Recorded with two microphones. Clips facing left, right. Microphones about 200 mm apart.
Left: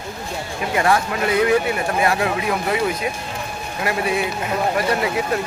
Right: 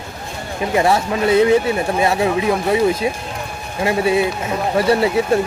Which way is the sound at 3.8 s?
25° right (ahead or behind).